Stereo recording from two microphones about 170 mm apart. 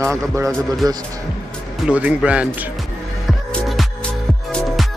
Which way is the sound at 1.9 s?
5° right (ahead or behind).